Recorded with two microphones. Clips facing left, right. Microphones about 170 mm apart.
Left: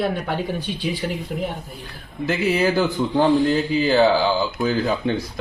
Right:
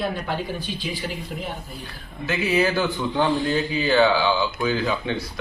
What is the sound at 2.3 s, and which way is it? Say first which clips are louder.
Speech: left 2 dB; 40° left (ahead or behind).